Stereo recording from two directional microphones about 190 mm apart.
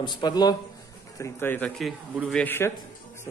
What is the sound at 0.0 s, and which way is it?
Speech, 25° left (ahead or behind).